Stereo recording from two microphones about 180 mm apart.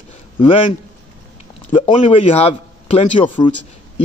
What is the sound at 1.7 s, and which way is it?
A man's voice, 30° left (ahead or behind).